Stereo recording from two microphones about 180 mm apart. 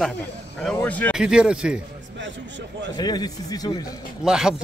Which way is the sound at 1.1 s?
5° right (ahead or behind).